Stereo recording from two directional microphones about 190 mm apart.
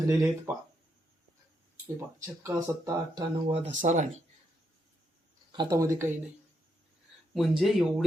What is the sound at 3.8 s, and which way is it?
Speech, 45° right (ahead or behind).